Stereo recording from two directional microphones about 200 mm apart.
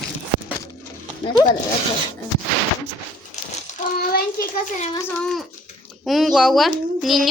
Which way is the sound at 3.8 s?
45° left (ahead or behind).